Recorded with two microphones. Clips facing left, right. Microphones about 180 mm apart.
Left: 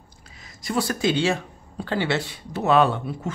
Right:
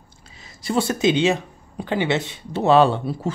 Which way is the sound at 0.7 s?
25° right (ahead or behind).